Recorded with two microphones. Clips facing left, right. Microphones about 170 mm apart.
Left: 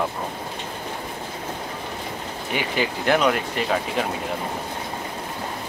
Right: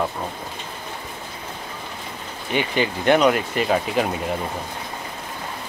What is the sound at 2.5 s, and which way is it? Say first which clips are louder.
Speech: right 3 dB; 5° left (ahead or behind).